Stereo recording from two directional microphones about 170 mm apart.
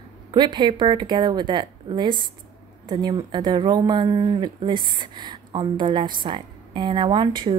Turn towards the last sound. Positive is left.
turn(degrees=-25)  # may be behind; listen again after turning